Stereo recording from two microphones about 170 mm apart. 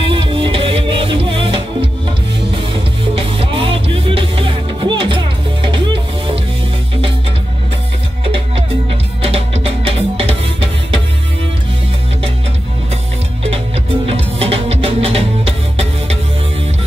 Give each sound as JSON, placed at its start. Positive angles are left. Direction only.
{"t": 0.1, "sound": "music", "side_deg": -30}
{"t": 9.2, "sound": "music", "side_deg": -35}
{"t": 14.0, "sound": "music", "side_deg": -35}